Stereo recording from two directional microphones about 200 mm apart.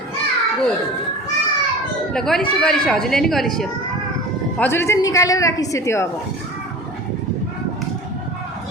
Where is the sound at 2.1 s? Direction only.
Centre (ahead or behind).